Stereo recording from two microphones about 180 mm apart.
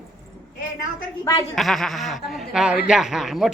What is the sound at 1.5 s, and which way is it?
Speech, centre (ahead or behind).